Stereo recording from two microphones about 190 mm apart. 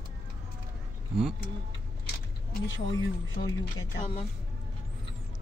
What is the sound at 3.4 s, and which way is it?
Speech, 45° left (ahead or behind).